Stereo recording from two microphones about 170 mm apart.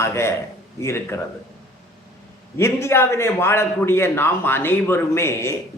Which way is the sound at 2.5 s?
15° left (ahead or behind).